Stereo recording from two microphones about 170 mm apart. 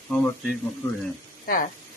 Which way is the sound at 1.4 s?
55° left (ahead or behind).